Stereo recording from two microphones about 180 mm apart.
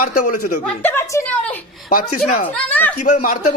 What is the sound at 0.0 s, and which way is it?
Speech, 50° left (ahead or behind).